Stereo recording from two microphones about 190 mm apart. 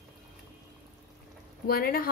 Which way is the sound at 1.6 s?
50° left (ahead or behind).